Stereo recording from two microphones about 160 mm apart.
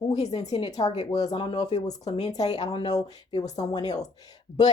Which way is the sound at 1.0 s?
25° left (ahead or behind).